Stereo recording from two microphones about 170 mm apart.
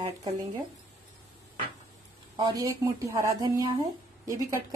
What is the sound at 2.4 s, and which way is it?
A woman's voice, 20° right (ahead or behind).